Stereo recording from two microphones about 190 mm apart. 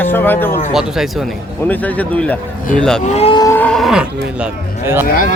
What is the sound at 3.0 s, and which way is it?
Cattle, 30° left (ahead or behind).